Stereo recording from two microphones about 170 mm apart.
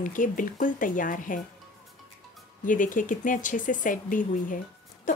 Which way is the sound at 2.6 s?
50° left (ahead or behind).